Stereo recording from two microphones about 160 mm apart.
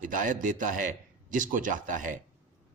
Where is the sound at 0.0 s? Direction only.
55° right (ahead or behind).